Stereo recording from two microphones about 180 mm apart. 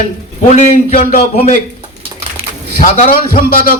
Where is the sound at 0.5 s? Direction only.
35° left (ahead or behind).